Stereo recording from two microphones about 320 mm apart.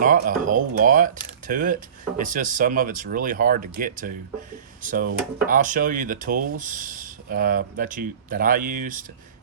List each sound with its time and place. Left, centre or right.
0.0 s speech: right